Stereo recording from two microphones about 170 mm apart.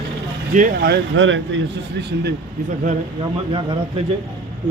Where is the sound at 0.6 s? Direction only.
60° right (ahead or behind); by 1.6 s 90° right.